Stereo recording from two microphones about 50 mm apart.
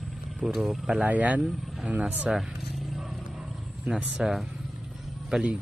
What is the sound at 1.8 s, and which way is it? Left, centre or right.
Speech, right.